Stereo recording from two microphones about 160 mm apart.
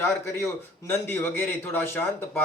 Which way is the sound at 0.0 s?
15° left (ahead or behind).